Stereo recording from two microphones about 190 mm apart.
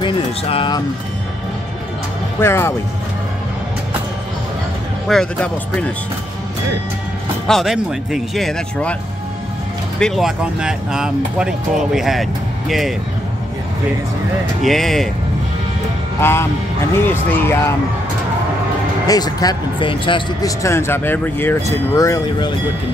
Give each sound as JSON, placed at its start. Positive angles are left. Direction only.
{"t": 0.0, "sound": "speech", "side_deg": 25}
{"t": 2.4, "sound": "speech", "side_deg": 15}
{"t": 5.0, "sound": "speech", "side_deg": 5}
{"t": 7.4, "sound": "speech", "side_deg": 0}
{"t": 9.9, "sound": "speech", "side_deg": 0}
{"t": 14.6, "sound": "speech", "side_deg": 0}
{"t": 16.2, "sound": "speech", "side_deg": 10}
{"t": 19.0, "sound": "speech", "side_deg": 20}
{"t": 20.6, "sound": "speech", "side_deg": 15}